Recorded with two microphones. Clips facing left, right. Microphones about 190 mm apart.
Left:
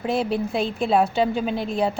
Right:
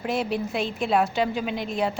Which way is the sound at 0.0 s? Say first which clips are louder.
Left 3 dB; 30° left (ahead or behind).